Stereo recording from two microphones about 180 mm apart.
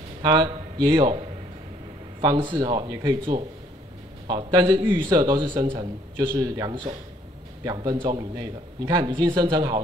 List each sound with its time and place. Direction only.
0.2 s a man's voice: 20° right (ahead or behind)
2.2 s a man's voice: 25° right (ahead or behind)